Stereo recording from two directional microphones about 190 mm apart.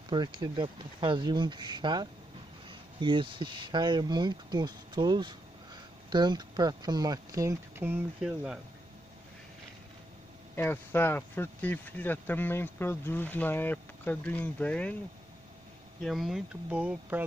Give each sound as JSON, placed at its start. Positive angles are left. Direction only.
{"t": 0.1, "sound": "speech", "side_deg": -25}
{"t": 10.5, "sound": "speech", "side_deg": 10}
{"t": 16.0, "sound": "speech", "side_deg": 0}